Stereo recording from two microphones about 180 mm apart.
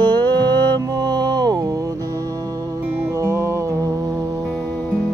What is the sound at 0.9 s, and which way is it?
Music, 20° right (ahead or behind).